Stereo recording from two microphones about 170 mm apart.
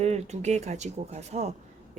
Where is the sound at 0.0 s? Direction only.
40° right (ahead or behind).